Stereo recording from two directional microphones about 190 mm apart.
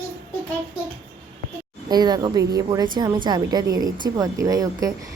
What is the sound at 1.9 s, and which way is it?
A woman's voice, 20° right (ahead or behind).